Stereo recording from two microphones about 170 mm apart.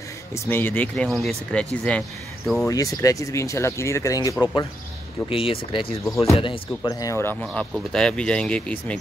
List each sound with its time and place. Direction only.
0.3 s speech: 10° left (ahead or behind)
2.7 s speech: 20° left (ahead or behind)
5.3 s speech: 30° left (ahead or behind); by 7.6 s 15° left (ahead or behind)
7.7 s speech: 5° left (ahead or behind)